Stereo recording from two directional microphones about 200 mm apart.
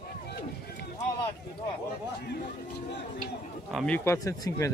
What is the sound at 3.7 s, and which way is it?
Speech, 5° left (ahead or behind).